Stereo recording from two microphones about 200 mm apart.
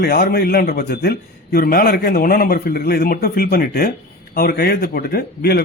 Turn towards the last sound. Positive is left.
turn(degrees=50)  # may be behind; listen again after turning